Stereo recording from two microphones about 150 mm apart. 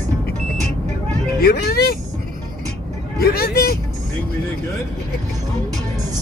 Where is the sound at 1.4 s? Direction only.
90° left.